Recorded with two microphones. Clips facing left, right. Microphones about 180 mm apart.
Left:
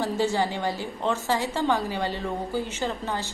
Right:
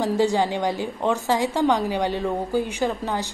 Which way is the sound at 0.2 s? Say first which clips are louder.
Right 4 dB; 15° right (ahead or behind).